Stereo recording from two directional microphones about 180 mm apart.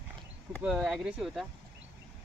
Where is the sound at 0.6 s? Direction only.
5° right (ahead or behind).